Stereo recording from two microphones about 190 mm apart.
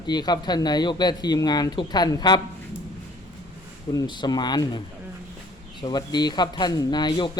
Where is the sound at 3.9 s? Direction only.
25° left (ahead or behind).